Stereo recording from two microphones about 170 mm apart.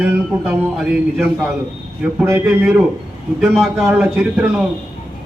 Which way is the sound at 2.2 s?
15° right (ahead or behind).